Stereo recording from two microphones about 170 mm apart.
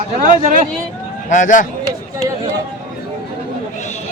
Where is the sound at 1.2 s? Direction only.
50° left (ahead or behind).